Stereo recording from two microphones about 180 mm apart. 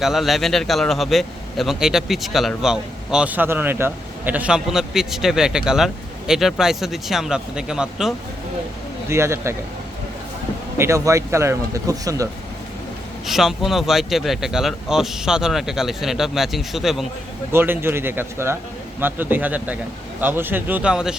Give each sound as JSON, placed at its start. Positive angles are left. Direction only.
{"t": 0.0, "sound": "a man's voice", "side_deg": 0}
{"t": 9.0, "sound": "speech", "side_deg": -15}
{"t": 10.8, "sound": "speech", "side_deg": -15}
{"t": 13.2, "sound": "a man's voice", "side_deg": 0}
{"t": 17.5, "sound": "speech", "side_deg": -10}